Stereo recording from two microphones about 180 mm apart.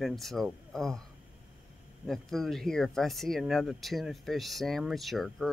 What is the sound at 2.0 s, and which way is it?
Speech, centre (ahead or behind).